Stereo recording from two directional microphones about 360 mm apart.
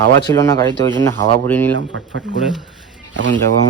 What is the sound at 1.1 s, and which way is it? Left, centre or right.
Speech, right.